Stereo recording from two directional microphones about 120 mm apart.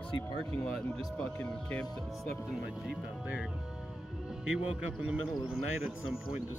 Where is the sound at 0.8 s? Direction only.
10° left (ahead or behind).